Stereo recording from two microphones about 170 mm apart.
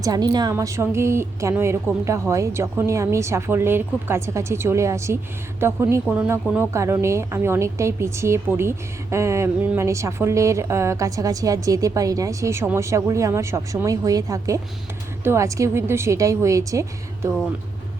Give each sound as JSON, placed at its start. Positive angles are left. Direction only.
{"t": 0.0, "sound": "a woman's voice", "side_deg": -25}